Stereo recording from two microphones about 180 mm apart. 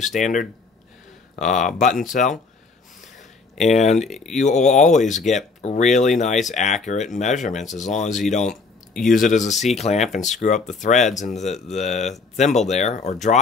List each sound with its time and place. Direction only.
0.0 s speech: 45° left (ahead or behind)
3.6 s speech: 40° left (ahead or behind)
4.1 s speech: centre (ahead or behind)
4.4 s speech: 40° left (ahead or behind)